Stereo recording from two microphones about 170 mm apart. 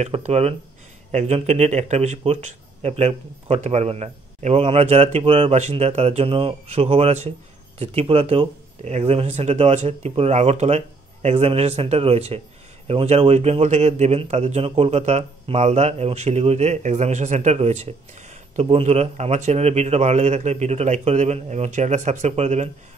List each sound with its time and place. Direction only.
0.0 s speech: 40° right (ahead or behind)